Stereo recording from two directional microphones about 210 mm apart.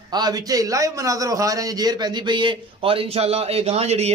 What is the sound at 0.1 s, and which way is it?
A man's voice, 20° right (ahead or behind).